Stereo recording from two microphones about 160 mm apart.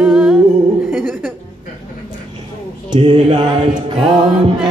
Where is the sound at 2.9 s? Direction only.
35° right (ahead or behind).